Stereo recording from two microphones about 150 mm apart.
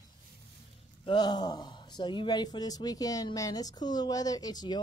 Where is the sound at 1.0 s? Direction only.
30° left (ahead or behind).